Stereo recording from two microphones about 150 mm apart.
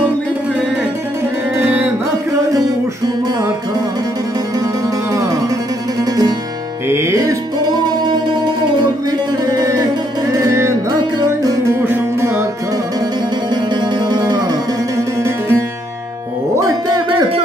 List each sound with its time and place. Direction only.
5.1 s music: 20° right (ahead or behind)
6.9 s music: 20° right (ahead or behind)
9.6 s music: 25° right (ahead or behind)
13.7 s music: 30° right (ahead or behind)